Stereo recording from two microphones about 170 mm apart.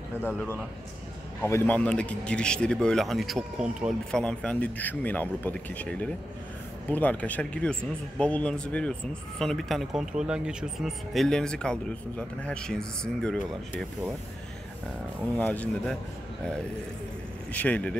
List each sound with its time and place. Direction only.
0.2 s speech: 15° left (ahead or behind); by 4.2 s 5° right (ahead or behind)
4.2 s speech: 5° left (ahead or behind)
15.3 s speech: 10° left (ahead or behind)
17.5 s speech: 10° left (ahead or behind)